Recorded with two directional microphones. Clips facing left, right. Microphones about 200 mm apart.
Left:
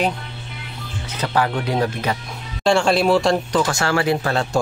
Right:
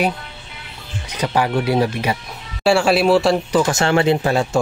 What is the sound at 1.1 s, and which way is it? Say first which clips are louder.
Speech: right 2 dB; 15° right (ahead or behind).